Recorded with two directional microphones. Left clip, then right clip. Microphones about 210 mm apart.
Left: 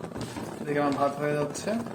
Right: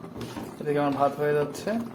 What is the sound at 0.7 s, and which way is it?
Speech, 15° right (ahead or behind).